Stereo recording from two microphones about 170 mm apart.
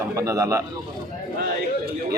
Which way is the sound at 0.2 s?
20° right (ahead or behind).